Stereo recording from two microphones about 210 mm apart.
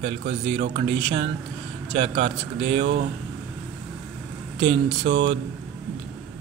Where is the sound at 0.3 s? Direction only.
20° right (ahead or behind).